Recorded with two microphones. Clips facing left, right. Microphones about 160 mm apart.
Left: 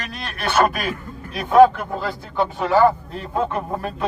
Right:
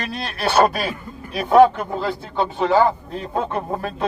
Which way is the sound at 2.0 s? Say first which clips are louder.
Even; 20° right (ahead or behind).